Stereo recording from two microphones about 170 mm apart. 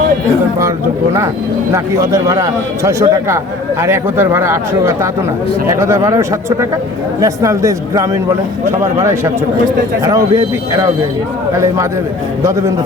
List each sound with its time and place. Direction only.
1.7 s a man's voice: 20° right (ahead or behind)
10.3 s a man's voice: 15° right (ahead or behind)
12.4 s a man's voice: 15° right (ahead or behind)